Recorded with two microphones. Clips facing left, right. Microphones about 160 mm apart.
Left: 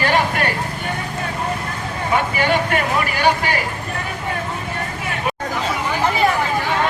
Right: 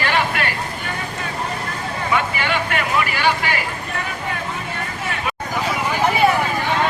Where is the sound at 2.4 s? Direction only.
40° left (ahead or behind).